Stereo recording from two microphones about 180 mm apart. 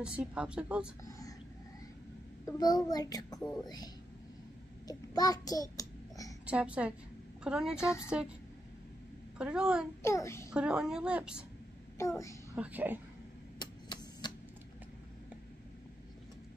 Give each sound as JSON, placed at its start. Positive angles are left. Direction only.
{"t": 0.0, "sound": "speech", "side_deg": -5}
{"t": 2.4, "sound": "a child's voice", "side_deg": 20}
{"t": 4.8, "sound": "a sound", "side_deg": 20}
{"t": 6.4, "sound": "a woman's voice", "side_deg": -5}
{"t": 9.4, "sound": "speech", "side_deg": -5}
{"t": 10.0, "sound": "a child's voice", "side_deg": 15}
{"t": 10.5, "sound": "speech", "side_deg": -5}
{"t": 12.0, "sound": "a child's voice", "side_deg": 15}
{"t": 12.5, "sound": "a woman's voice", "side_deg": -10}
{"t": 13.6, "sound": "a sound", "side_deg": 25}